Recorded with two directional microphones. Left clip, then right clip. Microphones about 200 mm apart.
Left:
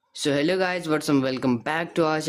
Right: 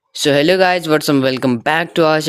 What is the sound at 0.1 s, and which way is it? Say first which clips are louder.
Speech: right 10 dB; 30° right (ahead or behind).